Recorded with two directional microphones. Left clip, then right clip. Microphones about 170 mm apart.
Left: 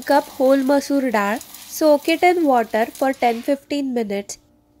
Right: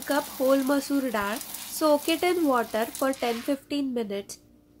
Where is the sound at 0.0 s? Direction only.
30° left (ahead or behind).